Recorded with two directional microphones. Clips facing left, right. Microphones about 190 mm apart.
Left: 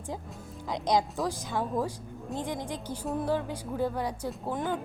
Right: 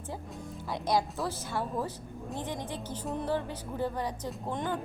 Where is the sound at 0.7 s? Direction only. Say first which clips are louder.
Left 2 dB; 20° left (ahead or behind).